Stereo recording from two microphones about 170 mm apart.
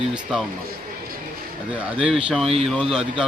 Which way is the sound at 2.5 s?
35° right (ahead or behind).